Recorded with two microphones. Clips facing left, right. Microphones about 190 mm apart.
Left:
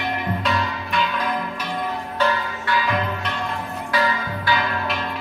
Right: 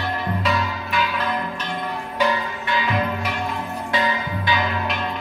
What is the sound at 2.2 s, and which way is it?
Change ringing, 20° right (ahead or behind).